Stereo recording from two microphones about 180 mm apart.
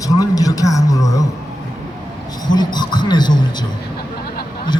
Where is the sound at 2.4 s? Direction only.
25° left (ahead or behind).